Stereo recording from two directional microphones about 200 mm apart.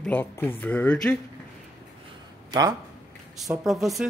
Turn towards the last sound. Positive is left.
turn(degrees=0)  # may be behind; listen again after turning